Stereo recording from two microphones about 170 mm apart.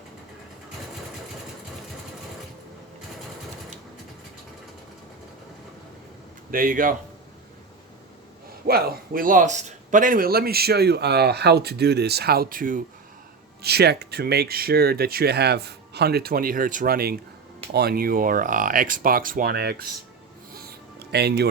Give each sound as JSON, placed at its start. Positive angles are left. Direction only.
{"t": 6.5, "sound": "speech", "side_deg": -55}
{"t": 8.6, "sound": "speech", "side_deg": -65}
{"t": 13.6, "sound": "speech", "side_deg": -70}
{"t": 20.5, "sound": "music", "side_deg": -65}